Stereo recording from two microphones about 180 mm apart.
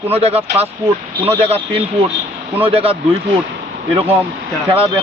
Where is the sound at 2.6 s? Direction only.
30° right (ahead or behind).